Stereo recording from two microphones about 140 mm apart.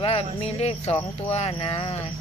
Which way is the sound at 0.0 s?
45° left (ahead or behind).